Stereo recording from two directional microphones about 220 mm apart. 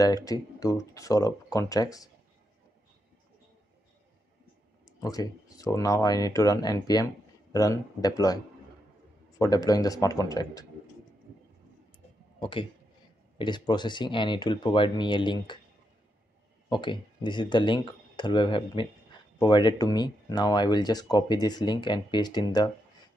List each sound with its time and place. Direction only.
0.0 s speech: 15° left (ahead or behind)
5.0 s speech: 15° left (ahead or behind)
9.4 s speech: 15° left (ahead or behind)
12.4 s speech: 20° left (ahead or behind)
16.6 s speech: 20° left (ahead or behind)